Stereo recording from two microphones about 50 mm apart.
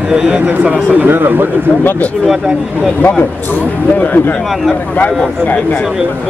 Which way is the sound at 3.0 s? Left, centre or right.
Left.